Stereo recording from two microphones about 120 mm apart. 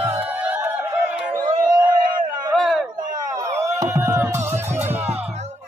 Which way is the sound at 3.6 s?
25° right (ahead or behind).